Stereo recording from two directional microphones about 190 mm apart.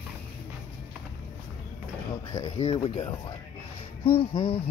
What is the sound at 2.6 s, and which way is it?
Speech, 30° left (ahead or behind).